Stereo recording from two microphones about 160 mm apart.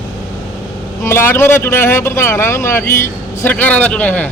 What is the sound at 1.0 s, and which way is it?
A man's voice, 15° left (ahead or behind).